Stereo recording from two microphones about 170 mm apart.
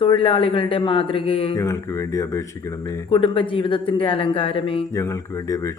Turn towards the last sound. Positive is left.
turn(degrees=20)  # may be behind; listen again after turning